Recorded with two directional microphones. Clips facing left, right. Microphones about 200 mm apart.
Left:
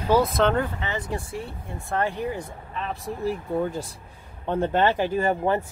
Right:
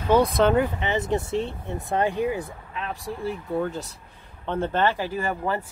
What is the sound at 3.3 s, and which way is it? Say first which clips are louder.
Speech: left 1 dB; 10° left (ahead or behind).